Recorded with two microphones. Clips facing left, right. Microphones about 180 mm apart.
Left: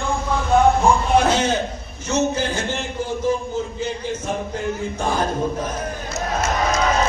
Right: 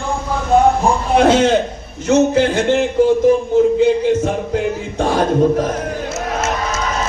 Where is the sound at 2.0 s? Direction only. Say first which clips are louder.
Right 8 dB; 60° right (ahead or behind).